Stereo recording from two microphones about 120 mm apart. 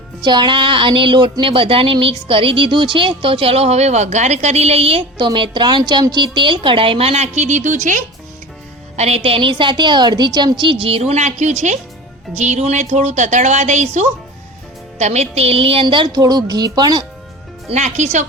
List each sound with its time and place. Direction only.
0.2 s a woman's voice: 40° right (ahead or behind); by 8.0 s 90° right
9.0 s a woman's voice: 60° right (ahead or behind); by 17.1 s 35° right (ahead or behind)
17.7 s a woman's voice: 70° right (ahead or behind)